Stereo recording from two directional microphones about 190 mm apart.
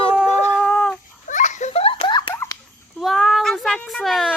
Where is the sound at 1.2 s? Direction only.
40° left (ahead or behind); by 2.3 s 25° left (ahead or behind).